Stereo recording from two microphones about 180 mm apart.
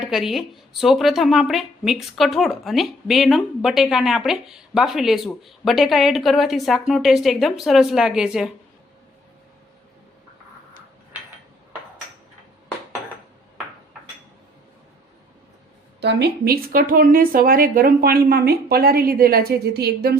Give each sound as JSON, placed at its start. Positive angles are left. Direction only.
{"t": 0.0, "sound": "speech", "side_deg": 0}
{"t": 16.0, "sound": "speech", "side_deg": -65}